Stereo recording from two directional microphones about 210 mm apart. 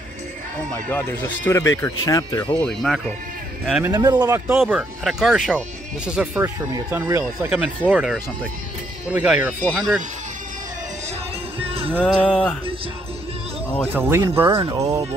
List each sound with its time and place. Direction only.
0.8 s speech: 10° left (ahead or behind)
3.6 s speech: 5° right (ahead or behind)
3.9 s speech: 20° right (ahead or behind)
4.5 s speech: 5° right (ahead or behind)
9.6 s speech: 5° left (ahead or behind)
11.6 s music: 25° right (ahead or behind)
12.0 s speech: centre (ahead or behind)
13.9 s speech: 10° right (ahead or behind)
14.6 s speech: 25° right (ahead or behind)